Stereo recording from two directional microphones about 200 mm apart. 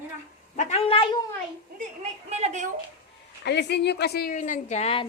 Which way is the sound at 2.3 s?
35° right (ahead or behind).